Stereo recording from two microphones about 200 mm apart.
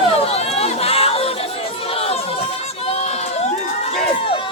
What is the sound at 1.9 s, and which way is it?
Crowd, 30° left (ahead or behind).